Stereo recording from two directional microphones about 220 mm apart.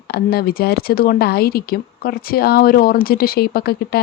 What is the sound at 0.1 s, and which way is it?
A woman's voice, 45° left (ahead or behind).